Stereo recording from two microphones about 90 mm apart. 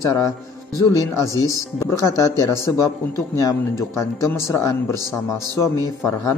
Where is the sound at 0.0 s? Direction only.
35° left (ahead or behind).